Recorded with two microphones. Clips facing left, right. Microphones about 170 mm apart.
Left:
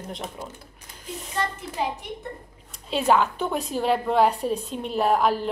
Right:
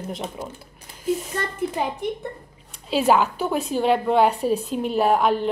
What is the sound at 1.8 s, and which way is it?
Speech, 60° right (ahead or behind).